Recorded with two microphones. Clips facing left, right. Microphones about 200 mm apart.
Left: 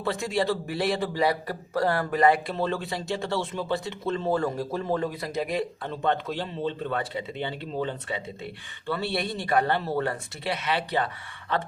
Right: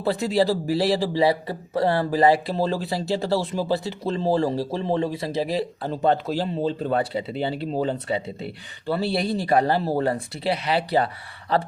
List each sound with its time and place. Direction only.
0.0 s a man's voice: 35° right (ahead or behind)